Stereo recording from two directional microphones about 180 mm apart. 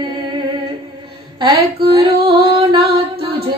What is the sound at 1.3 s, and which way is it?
Female singing, 25° right (ahead or behind).